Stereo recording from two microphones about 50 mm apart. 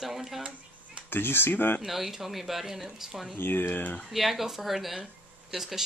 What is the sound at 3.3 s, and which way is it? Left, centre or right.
Speech, left.